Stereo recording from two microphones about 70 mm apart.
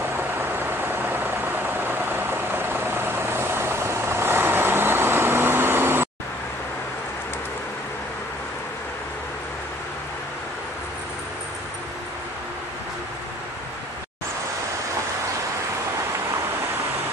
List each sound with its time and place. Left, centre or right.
0.0 s vehicle: right